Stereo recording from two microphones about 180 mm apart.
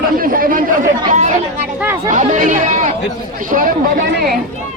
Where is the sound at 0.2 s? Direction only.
50° right (ahead or behind).